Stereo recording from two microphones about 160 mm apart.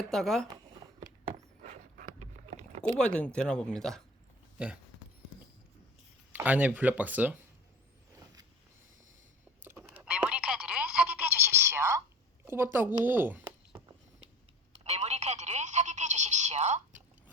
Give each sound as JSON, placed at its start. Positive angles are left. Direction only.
{"t": 0.0, "sound": "speech", "side_deg": 0}
{"t": 1.6, "sound": "dog", "side_deg": -45}
{"t": 2.8, "sound": "speech", "side_deg": 5}
{"t": 6.3, "sound": "speech", "side_deg": -10}
{"t": 9.9, "sound": "telephone", "side_deg": -10}
{"t": 12.5, "sound": "speech", "side_deg": -15}
{"t": 14.8, "sound": "telephone", "side_deg": -45}